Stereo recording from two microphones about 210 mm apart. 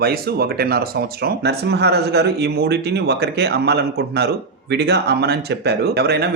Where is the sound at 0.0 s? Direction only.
50° right (ahead or behind).